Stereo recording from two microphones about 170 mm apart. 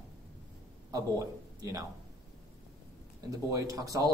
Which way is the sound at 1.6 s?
20° right (ahead or behind).